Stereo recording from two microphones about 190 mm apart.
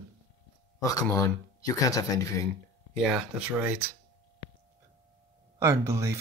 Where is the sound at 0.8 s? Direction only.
20° left (ahead or behind).